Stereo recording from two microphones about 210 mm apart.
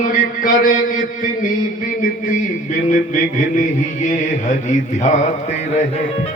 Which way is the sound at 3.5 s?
35° left (ahead or behind).